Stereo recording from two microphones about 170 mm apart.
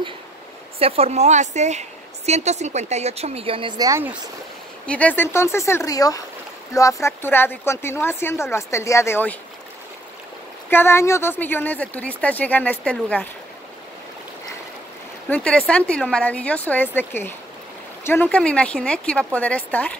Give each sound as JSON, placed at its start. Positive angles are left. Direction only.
{"t": 0.7, "sound": "a woman's voice", "side_deg": -35}
{"t": 4.8, "sound": "speech", "side_deg": 10}
{"t": 10.7, "sound": "speech", "side_deg": 15}
{"t": 15.2, "sound": "speech", "side_deg": 10}